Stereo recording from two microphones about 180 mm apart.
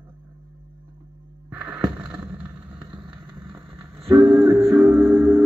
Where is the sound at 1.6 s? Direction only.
5° right (ahead or behind).